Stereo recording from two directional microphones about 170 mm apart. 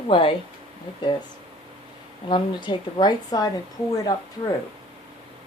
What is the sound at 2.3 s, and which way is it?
A woman's voice, 25° left (ahead or behind).